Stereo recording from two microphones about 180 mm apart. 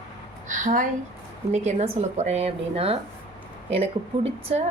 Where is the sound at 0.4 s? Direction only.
45° right (ahead or behind).